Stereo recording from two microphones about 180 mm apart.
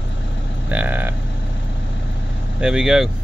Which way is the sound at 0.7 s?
10° right (ahead or behind).